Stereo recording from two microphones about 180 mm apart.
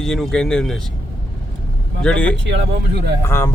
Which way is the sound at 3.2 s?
15° left (ahead or behind).